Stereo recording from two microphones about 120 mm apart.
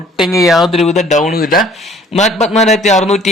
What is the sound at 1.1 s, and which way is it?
Speech, 90° left.